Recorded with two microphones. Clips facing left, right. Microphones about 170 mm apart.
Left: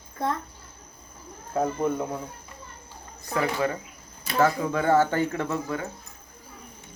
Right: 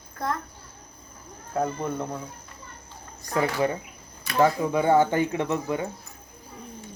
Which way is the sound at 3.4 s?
20° right (ahead or behind).